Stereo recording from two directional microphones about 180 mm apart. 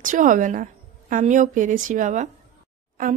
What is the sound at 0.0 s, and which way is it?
A woman's voice, 45° right (ahead or behind).